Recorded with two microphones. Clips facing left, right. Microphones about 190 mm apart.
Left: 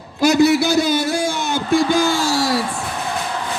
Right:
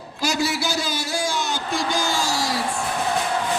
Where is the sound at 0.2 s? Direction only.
55° left (ahead or behind).